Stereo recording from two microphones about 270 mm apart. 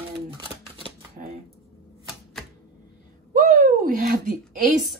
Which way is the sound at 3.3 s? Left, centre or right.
Right.